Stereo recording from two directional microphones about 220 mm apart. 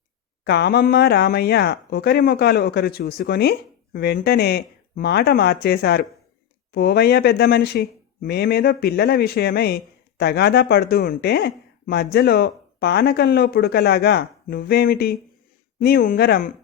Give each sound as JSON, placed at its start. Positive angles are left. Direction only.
{"t": 0.4, "sound": "speech", "side_deg": 45}